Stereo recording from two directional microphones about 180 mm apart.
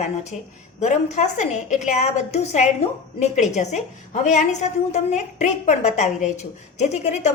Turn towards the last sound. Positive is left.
turn(degrees=40)  # may be behind; listen again after turning